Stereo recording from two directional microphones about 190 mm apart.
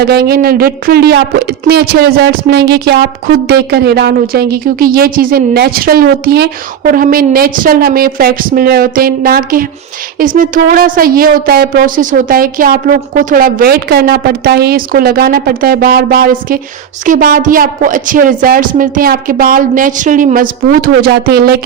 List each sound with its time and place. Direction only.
0.0 s speech: 55° right (ahead or behind)